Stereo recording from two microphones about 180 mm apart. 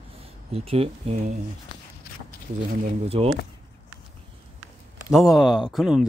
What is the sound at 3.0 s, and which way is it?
Speech, 35° right (ahead or behind).